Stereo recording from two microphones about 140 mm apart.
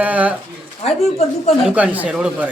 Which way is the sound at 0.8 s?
50° left (ahead or behind).